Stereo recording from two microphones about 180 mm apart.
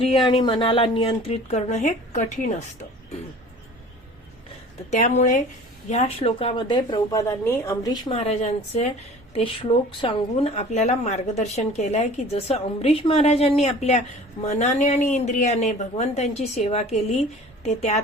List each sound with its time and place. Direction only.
0.0 s speech: 30° left (ahead or behind)
4.9 s speech: 40° left (ahead or behind)
5.9 s speech: 35° left (ahead or behind); by 8.1 s 15° left (ahead or behind)
8.1 s a woman's voice: 35° left (ahead or behind)